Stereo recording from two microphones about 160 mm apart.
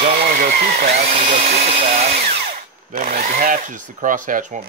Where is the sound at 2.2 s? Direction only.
60° right (ahead or behind).